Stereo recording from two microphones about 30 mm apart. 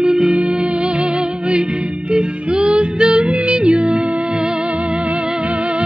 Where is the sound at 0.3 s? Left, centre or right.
Right.